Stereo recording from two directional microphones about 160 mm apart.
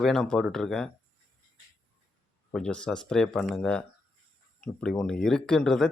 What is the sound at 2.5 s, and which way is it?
Speech, 5° left (ahead or behind).